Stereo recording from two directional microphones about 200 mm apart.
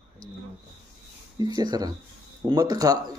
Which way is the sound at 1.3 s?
20° right (ahead or behind).